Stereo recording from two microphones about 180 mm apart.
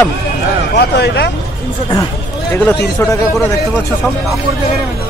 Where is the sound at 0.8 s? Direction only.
70° left (ahead or behind).